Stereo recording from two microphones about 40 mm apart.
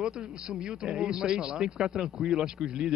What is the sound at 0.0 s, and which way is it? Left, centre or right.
Speech, right.